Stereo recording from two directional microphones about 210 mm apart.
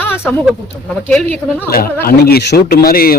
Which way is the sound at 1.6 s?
45° left (ahead or behind).